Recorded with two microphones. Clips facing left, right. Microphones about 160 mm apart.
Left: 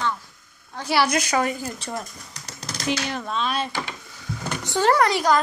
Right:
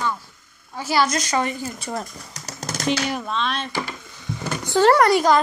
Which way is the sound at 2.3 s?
45° right (ahead or behind).